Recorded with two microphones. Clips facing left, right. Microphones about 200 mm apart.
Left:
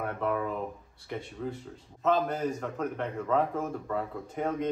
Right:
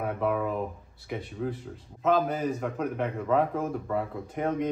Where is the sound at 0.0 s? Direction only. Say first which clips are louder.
Right 3 dB; 5° right (ahead or behind).